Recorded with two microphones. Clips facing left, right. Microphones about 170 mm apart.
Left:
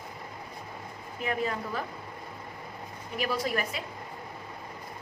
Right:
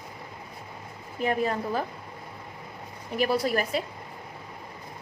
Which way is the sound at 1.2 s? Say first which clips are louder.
Right 5 dB; 40° right (ahead or behind).